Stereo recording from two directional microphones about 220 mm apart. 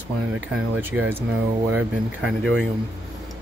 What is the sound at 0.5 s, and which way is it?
Speech, 10° right (ahead or behind).